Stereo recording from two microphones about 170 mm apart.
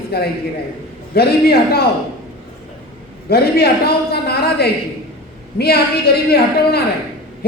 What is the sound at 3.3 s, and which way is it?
A man's voice, 70° left (ahead or behind).